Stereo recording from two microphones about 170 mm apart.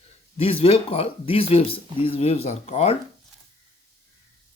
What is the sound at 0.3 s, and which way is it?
Speech, 35° left (ahead or behind).